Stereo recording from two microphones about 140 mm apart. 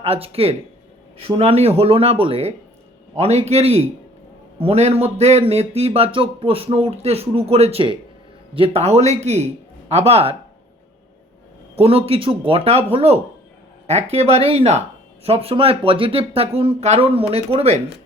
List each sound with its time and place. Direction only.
0.0 s speech: 45° right (ahead or behind)
11.8 s speech: 45° right (ahead or behind)